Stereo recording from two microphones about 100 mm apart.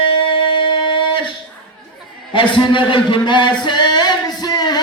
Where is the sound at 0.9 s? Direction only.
55° left (ahead or behind).